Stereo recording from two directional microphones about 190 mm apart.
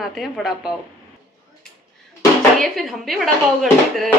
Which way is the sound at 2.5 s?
Centre (ahead or behind).